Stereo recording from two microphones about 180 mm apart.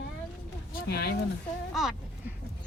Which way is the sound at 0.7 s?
60° left (ahead or behind).